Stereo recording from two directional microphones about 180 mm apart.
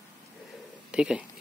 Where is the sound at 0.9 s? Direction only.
5° right (ahead or behind).